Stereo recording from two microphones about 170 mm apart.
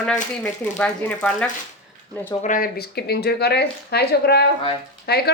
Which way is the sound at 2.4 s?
50° left (ahead or behind).